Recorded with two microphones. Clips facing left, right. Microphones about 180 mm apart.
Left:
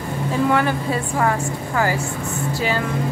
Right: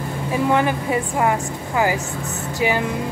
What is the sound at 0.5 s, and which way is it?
Speech, 20° right (ahead or behind).